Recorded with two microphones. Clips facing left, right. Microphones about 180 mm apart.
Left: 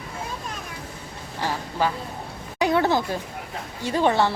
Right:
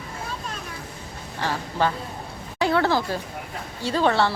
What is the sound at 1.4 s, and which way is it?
A woman's voice, 15° left (ahead or behind).